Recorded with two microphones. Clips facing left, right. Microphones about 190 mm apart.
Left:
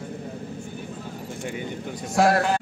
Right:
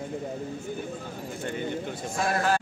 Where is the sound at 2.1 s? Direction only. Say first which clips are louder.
Left 9 dB; 80° left.